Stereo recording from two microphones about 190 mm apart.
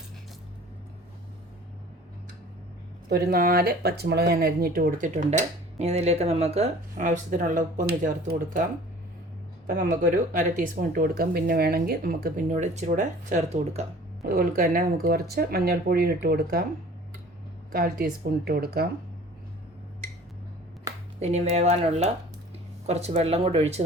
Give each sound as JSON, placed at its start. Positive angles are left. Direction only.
{"t": 3.1, "sound": "speech", "side_deg": -55}
{"t": 9.6, "sound": "speech", "side_deg": -40}
{"t": 14.3, "sound": "speech", "side_deg": -50}
{"t": 17.7, "sound": "speech", "side_deg": -50}
{"t": 21.2, "sound": "speech", "side_deg": -35}